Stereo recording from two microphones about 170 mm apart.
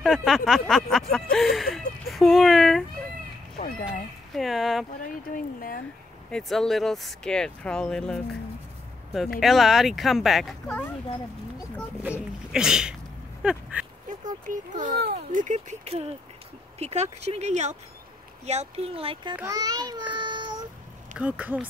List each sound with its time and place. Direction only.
0.0 s speech: centre (ahead or behind)
1.3 s a sound: centre (ahead or behind)
3.5 s speech: 50° left (ahead or behind)
4.3 s speech: centre (ahead or behind)
5.0 s speech: 55° left (ahead or behind)
6.3 s speech: centre (ahead or behind)
9.4 s speech: centre (ahead or behind)
12.0 s speech: 5° right (ahead or behind)
13.4 s a sound: 5° right (ahead or behind)
14.0 s a child's voice: 50° right (ahead or behind)
15.0 s a child's voice: 65° right (ahead or behind)
15.4 s speech: 45° right (ahead or behind)
19.3 s a child's voice: 20° right (ahead or behind)
21.2 s speech: 5° right (ahead or behind)